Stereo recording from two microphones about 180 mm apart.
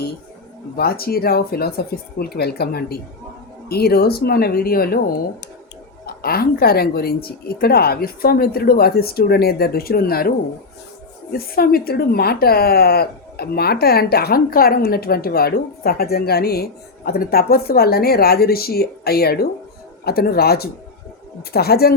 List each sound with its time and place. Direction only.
0.8 s speech: 55° left (ahead or behind)
6.2 s speech: 55° left (ahead or behind)